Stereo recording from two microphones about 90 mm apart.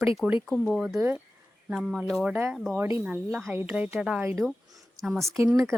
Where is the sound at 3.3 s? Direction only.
5° left (ahead or behind).